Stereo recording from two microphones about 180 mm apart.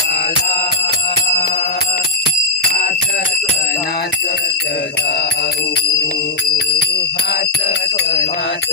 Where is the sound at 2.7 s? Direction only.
50° left (ahead or behind).